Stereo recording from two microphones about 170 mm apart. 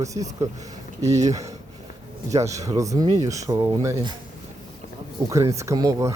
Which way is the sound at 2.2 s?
20° right (ahead or behind).